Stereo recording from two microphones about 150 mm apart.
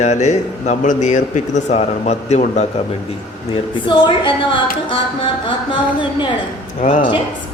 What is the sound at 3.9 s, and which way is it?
Speech, 35° left (ahead or behind).